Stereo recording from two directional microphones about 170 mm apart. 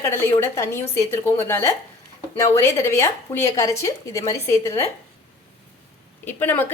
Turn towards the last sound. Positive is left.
turn(degrees=10)  # may be behind; listen again after turning